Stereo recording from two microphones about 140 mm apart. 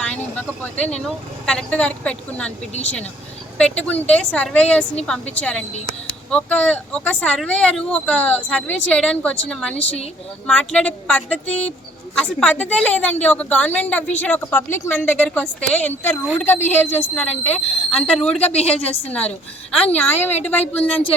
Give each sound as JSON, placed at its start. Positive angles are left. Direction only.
{"t": 0.0, "sound": "speech", "side_deg": 10}
{"t": 18.4, "sound": "a woman's voice", "side_deg": 50}
{"t": 18.7, "sound": "speech", "side_deg": 10}